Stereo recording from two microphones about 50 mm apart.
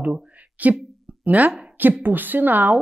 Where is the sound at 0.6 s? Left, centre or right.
Right.